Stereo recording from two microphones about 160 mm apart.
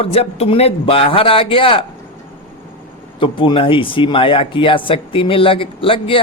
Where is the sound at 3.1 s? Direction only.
30° left (ahead or behind).